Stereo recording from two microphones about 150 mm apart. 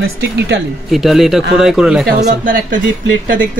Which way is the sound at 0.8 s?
Centre (ahead or behind).